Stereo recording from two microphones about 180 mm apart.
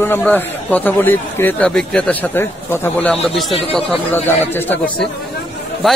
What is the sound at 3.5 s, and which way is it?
Speech, 30° left (ahead or behind).